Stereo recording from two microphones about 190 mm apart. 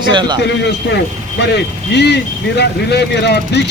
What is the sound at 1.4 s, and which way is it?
Speech, 60° left (ahead or behind).